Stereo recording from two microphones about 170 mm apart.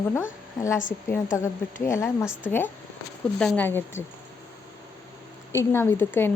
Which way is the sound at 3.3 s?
5° left (ahead or behind).